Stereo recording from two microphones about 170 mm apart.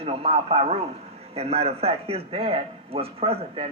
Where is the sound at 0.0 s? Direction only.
35° right (ahead or behind).